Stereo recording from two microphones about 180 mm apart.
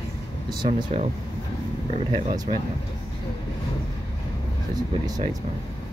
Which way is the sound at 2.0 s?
40° right (ahead or behind).